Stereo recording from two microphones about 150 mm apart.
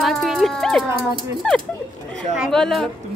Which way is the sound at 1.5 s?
5° left (ahead or behind).